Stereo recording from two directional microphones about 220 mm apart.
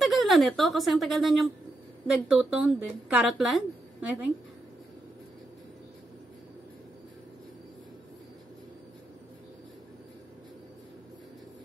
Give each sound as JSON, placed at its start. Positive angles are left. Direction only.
{"t": 0.0, "sound": "a woman's voice", "side_deg": 0}